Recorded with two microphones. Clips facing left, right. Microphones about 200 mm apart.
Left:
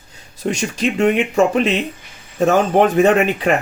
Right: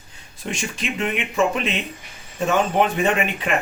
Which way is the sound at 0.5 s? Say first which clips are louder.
Left 7 dB; 40° left (ahead or behind).